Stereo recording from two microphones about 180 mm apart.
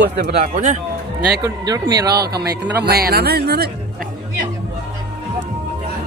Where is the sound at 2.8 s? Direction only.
60° right (ahead or behind).